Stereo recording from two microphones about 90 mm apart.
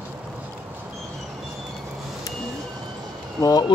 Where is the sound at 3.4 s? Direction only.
45° left (ahead or behind).